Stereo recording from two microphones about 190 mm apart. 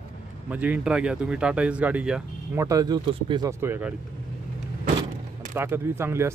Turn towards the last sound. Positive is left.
turn(degrees=-15)  # may be behind; listen again after turning